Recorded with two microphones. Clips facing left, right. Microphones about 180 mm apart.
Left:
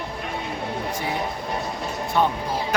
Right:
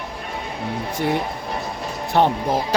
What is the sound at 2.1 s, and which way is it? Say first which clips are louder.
Speech: right 4 dB; 70° right (ahead or behind).